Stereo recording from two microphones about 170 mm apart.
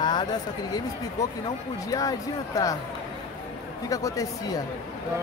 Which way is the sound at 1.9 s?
20° left (ahead or behind).